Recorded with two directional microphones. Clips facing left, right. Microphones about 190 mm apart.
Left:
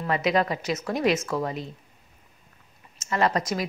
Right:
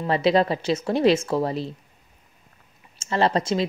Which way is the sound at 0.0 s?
30° right (ahead or behind).